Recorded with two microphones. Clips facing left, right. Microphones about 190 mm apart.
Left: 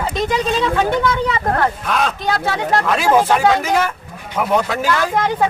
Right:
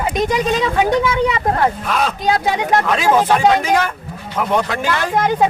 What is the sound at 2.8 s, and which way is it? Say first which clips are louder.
Speech: left 3 dB; 5° left (ahead or behind).